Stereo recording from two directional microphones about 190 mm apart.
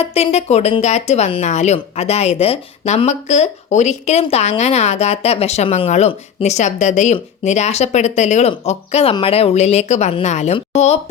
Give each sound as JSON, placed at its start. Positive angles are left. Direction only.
{"t": 0.0, "sound": "speech", "side_deg": 35}